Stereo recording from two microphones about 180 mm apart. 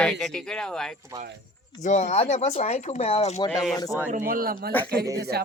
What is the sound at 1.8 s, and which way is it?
Speech, 40° left (ahead or behind).